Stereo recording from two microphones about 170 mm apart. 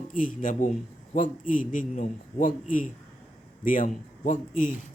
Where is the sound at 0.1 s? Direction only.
55° left (ahead or behind).